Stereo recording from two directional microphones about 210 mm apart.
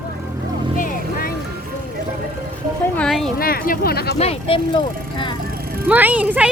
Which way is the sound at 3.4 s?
45° left (ahead or behind).